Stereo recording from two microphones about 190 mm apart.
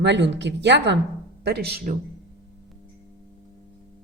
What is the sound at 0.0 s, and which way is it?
Speech, 65° right (ahead or behind).